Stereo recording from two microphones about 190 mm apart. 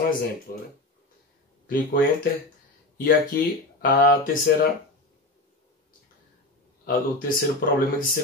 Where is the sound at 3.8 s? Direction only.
50° left (ahead or behind).